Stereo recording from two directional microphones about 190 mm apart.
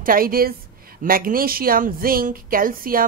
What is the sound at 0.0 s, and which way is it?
A woman's voice, 50° right (ahead or behind).